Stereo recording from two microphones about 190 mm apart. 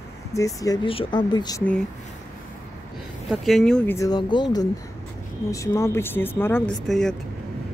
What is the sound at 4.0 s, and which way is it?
Speech, 20° left (ahead or behind).